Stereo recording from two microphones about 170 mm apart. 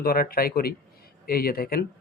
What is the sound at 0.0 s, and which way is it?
Speech, 60° left (ahead or behind).